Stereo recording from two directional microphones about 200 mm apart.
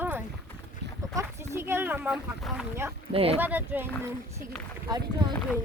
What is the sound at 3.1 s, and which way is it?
Speech, 30° right (ahead or behind).